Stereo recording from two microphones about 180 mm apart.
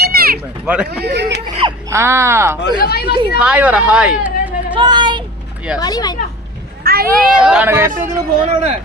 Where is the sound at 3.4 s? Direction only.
5° right (ahead or behind).